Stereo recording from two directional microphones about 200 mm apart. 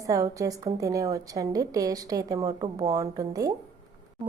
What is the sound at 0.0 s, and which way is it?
A woman's voice, 15° right (ahead or behind).